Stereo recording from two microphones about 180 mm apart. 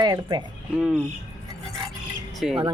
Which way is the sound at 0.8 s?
5° right (ahead or behind).